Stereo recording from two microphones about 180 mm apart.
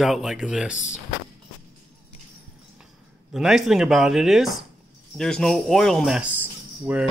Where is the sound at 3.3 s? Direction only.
Centre (ahead or behind).